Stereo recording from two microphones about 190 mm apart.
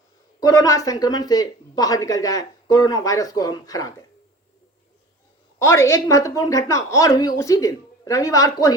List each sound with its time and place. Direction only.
0.3 s speech: 15° left (ahead or behind)
5.5 s a woman's voice: 15° left (ahead or behind)